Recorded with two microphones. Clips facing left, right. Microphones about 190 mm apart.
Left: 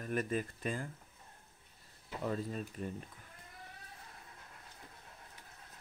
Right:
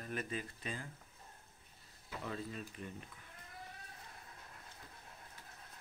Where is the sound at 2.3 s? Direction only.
40° left (ahead or behind).